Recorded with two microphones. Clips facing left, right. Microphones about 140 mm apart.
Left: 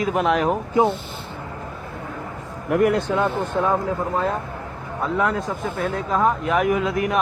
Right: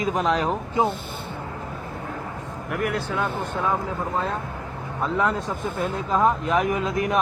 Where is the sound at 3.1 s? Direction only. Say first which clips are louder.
Left 5 dB; 15° left (ahead or behind).